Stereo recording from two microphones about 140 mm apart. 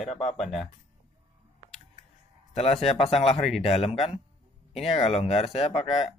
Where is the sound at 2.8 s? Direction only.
50° left (ahead or behind).